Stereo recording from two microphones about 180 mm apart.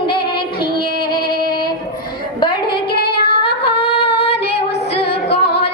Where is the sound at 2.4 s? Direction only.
25° left (ahead or behind).